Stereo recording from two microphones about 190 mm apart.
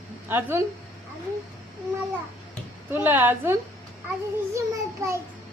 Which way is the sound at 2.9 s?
10° right (ahead or behind).